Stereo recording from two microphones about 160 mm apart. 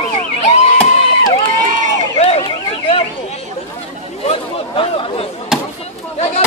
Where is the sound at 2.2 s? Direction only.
40° left (ahead or behind).